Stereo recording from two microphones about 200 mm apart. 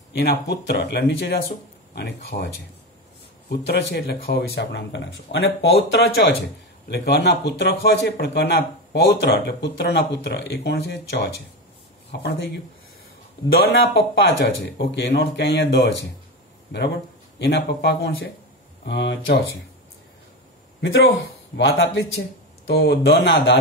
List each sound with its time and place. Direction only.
0.1 s a man's voice: 55° left (ahead or behind)
13.5 s a man's voice: 55° left (ahead or behind)
21.5 s a man's voice: 65° left (ahead or behind)